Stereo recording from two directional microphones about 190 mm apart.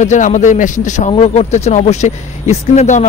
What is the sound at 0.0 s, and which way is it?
Speech, 40° left (ahead or behind).